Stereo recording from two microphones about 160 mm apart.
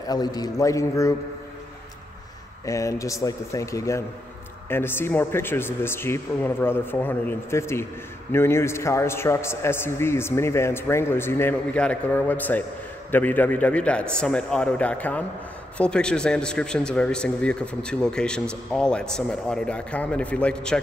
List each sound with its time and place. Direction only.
0.1 s speech: 25° left (ahead or behind)
2.6 s a man's voice: 20° left (ahead or behind)